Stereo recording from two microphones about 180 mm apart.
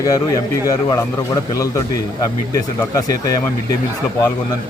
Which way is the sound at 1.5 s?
20° left (ahead or behind).